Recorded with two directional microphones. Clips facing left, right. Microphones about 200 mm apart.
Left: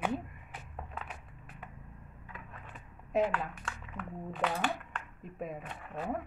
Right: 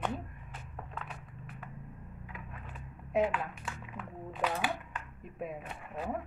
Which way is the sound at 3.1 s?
Centre (ahead or behind).